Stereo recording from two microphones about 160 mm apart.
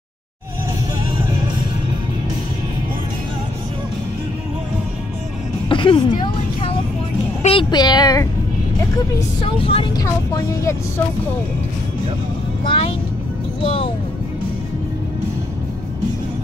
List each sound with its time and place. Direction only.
5.7 s music: 30° left (ahead or behind)
7.4 s speech: 30° left (ahead or behind)
9.4 s speech: 35° left (ahead or behind)
9.9 s speech: 20° left (ahead or behind)
12.6 s speech: 35° left (ahead or behind)